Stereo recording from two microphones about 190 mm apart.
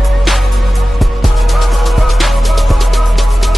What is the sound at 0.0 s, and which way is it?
Music, centre (ahead or behind).